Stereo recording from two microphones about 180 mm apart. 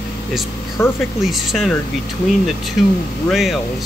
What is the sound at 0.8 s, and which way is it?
Speech, 15° left (ahead or behind).